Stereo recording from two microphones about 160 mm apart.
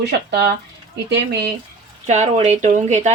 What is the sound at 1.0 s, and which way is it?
Speech, 90° right.